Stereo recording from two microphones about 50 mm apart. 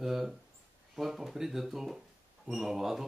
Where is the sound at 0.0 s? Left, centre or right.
Centre.